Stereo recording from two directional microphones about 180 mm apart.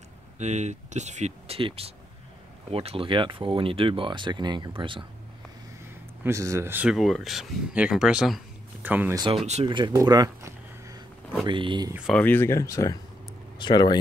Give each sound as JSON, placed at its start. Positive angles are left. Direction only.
{"t": 0.4, "sound": "speech", "side_deg": -40}
{"t": 6.2, "sound": "speech", "side_deg": -15}
{"t": 9.7, "sound": "a sound", "side_deg": -25}
{"t": 11.4, "sound": "speech", "side_deg": -25}
{"t": 12.1, "sound": "speech", "side_deg": 10}